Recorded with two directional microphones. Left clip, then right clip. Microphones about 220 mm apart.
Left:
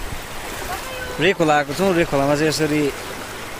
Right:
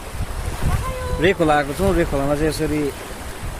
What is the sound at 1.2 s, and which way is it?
Speech, centre (ahead or behind).